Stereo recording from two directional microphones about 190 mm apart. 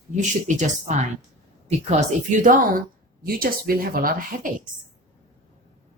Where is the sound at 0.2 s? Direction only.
40° right (ahead or behind).